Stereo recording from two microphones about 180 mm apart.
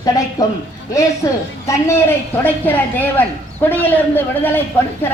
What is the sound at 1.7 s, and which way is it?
A man's voice, 15° left (ahead or behind).